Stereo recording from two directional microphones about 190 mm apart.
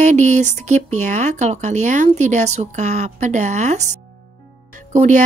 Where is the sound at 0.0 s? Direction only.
40° right (ahead or behind).